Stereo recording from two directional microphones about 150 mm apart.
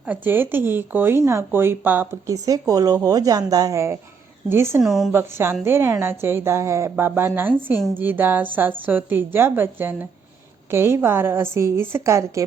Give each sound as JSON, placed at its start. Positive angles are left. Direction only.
{"t": 0.1, "sound": "speech", "side_deg": -15}
{"t": 2.3, "sound": "a woman's voice", "side_deg": -25}
{"t": 4.8, "sound": "a woman's voice", "side_deg": 0}
{"t": 5.1, "sound": "speech", "side_deg": -15}